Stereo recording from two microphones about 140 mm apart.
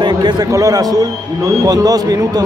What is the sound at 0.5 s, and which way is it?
Speech, 25° right (ahead or behind).